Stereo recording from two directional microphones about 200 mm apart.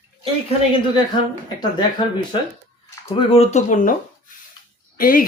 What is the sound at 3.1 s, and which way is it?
A woman's voice, 30° left (ahead or behind).